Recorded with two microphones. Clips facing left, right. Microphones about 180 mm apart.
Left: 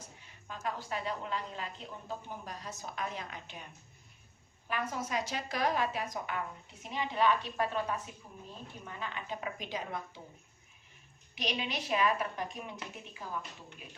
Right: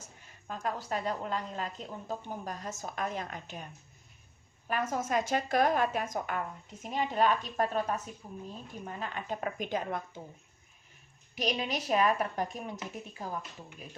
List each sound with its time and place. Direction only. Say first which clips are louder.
0.4 s a woman's voice: right 3 dB; 45° right (ahead or behind)
4.7 s a woman's voice: right 5 dB; 45° right (ahead or behind)
11.3 s a woman's voice: right 4 dB; 45° right (ahead or behind)